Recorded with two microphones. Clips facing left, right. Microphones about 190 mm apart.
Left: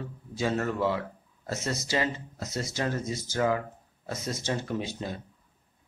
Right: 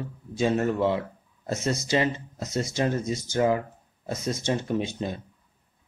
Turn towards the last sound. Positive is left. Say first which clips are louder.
# right 5 dB
turn(degrees=-20)  # may be behind; listen again after turning